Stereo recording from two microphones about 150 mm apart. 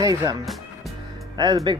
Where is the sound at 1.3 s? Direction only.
30° right (ahead or behind).